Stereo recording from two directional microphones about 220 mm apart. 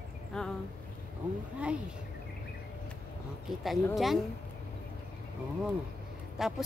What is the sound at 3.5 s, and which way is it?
Speech, centre (ahead or behind).